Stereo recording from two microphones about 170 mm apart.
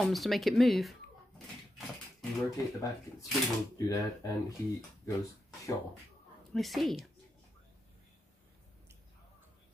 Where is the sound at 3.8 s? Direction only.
20° left (ahead or behind).